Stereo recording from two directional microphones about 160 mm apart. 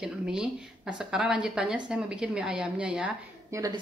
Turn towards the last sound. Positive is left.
turn(degrees=-20)  # may be behind; listen again after turning